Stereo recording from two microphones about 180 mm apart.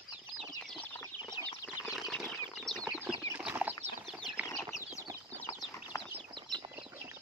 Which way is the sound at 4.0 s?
Centre (ahead or behind).